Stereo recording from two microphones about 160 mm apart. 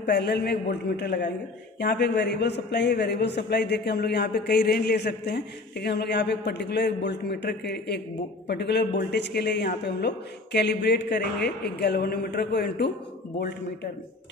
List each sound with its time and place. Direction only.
0.0 s a man's voice: 90° left